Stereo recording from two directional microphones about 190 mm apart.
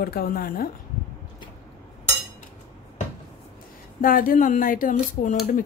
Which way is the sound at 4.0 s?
45° left (ahead or behind).